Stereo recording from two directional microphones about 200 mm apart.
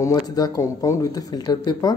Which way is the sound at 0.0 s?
20° left (ahead or behind).